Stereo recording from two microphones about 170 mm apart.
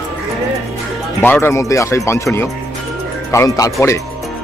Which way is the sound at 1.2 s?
10° left (ahead or behind).